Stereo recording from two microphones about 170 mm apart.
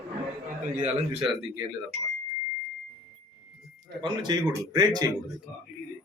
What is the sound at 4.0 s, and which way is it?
Speech, 30° right (ahead or behind).